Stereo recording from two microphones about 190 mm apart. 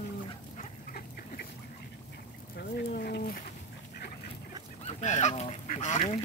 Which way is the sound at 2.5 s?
55° left (ahead or behind).